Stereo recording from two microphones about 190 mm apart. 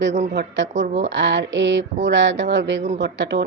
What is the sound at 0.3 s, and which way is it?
A woman's voice, 70° right (ahead or behind).